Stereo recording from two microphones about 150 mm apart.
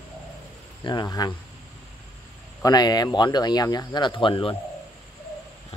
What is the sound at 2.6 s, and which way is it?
Speech, 25° left (ahead or behind).